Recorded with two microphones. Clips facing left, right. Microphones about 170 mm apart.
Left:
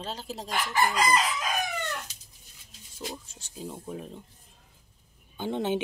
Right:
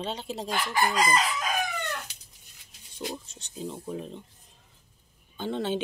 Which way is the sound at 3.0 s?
5° left (ahead or behind).